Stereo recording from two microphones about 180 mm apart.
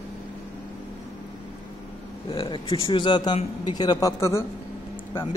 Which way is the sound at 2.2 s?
30° left (ahead or behind).